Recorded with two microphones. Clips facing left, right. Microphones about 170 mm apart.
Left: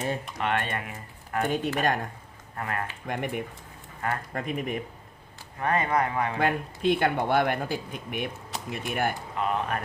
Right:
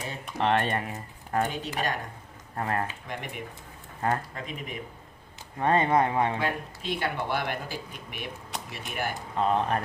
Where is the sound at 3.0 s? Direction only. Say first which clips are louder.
Left 6 dB; 50° left (ahead or behind).